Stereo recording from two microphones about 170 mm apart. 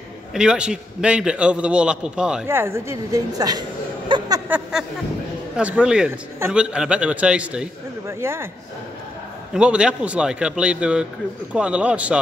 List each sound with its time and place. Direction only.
0.3 s a man's voice: 5° right (ahead or behind)
2.4 s a woman's voice: 15° right (ahead or behind)
4.1 s a sound: 30° right (ahead or behind)
4.5 s a woman's voice: 10° right (ahead or behind)
9.5 s a man's voice: 5° right (ahead or behind)